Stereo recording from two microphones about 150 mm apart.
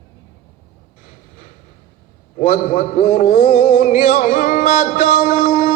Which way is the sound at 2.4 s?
55° left (ahead or behind).